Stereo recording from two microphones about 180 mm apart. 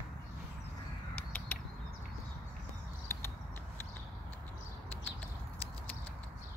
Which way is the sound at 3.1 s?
15° left (ahead or behind).